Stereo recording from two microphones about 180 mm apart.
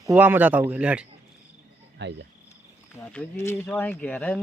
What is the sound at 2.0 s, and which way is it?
Speech, 75° right (ahead or behind).